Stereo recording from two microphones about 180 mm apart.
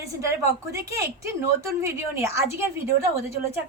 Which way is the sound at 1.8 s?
15° right (ahead or behind).